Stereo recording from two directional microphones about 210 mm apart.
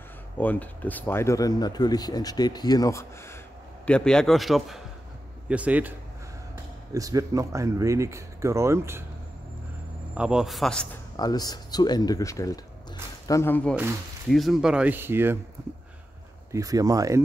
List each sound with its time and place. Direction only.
0.4 s a man's voice: 10° left (ahead or behind); by 9.0 s 10° right (ahead or behind)
10.1 s a man's voice: 5° right (ahead or behind)
11.1 s a man's voice: 20° left (ahead or behind); by 15.3 s 10° right (ahead or behind)
16.5 s speech: 15° right (ahead or behind)